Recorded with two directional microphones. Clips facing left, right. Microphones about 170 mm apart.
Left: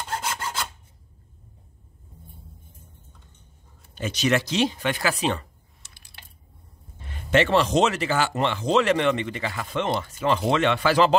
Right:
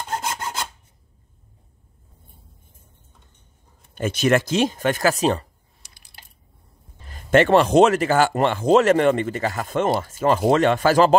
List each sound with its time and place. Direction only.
3.9 s speech: 50° right (ahead or behind)
5.8 s typing: 15° right (ahead or behind)
7.0 s speech: 40° right (ahead or behind)